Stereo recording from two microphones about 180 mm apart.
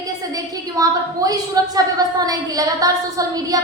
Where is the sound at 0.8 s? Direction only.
20° right (ahead or behind).